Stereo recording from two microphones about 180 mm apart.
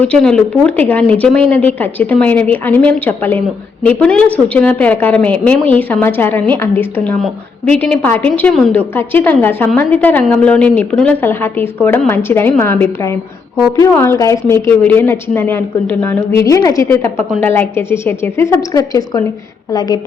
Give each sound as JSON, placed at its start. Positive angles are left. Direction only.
{"t": 0.0, "sound": "a woman's voice", "side_deg": 5}